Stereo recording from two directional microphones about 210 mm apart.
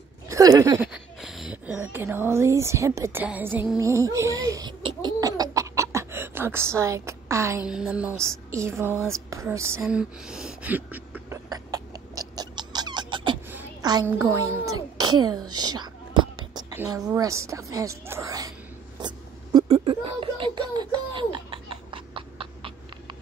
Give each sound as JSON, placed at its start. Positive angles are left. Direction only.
{"t": 0.3, "sound": "speech", "side_deg": -15}
{"t": 0.9, "sound": "speech", "side_deg": 0}
{"t": 9.3, "sound": "a sound", "side_deg": -15}
{"t": 15.0, "sound": "a child's voice", "side_deg": -20}
{"t": 15.5, "sound": "whispering", "side_deg": -20}
{"t": 16.5, "sound": "a woman's voice", "side_deg": -15}
{"t": 18.9, "sound": "a sound", "side_deg": -20}